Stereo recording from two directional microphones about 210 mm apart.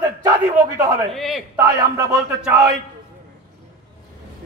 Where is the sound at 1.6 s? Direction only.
15° right (ahead or behind).